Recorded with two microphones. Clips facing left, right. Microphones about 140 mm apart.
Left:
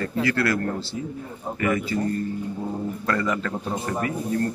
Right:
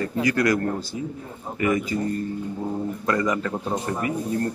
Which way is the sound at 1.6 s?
20° right (ahead or behind).